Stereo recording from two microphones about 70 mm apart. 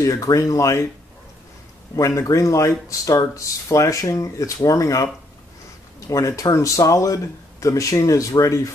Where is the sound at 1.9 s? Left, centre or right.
Left.